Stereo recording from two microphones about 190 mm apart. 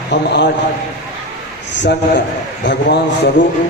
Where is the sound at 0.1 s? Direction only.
70° left (ahead or behind).